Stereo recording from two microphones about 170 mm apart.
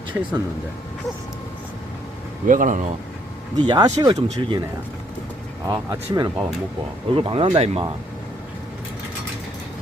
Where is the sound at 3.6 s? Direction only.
25° right (ahead or behind).